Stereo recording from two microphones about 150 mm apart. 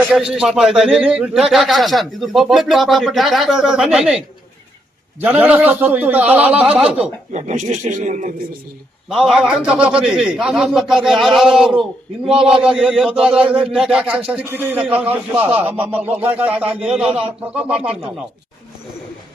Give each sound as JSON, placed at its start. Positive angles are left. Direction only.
{"t": 0.1, "sound": "a man's voice", "side_deg": -5}
{"t": 5.2, "sound": "speech", "side_deg": -10}
{"t": 7.3, "sound": "a man's voice", "side_deg": -50}
{"t": 9.0, "sound": "a man's voice", "side_deg": -5}